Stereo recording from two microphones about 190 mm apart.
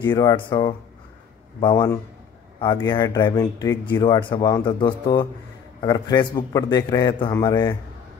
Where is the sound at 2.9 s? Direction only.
20° left (ahead or behind).